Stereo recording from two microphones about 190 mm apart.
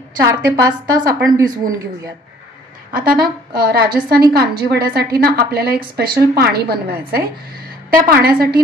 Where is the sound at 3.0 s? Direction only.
55° right (ahead or behind).